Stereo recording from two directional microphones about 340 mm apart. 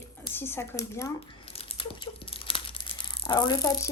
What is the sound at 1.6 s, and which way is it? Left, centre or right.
Crumpling, centre.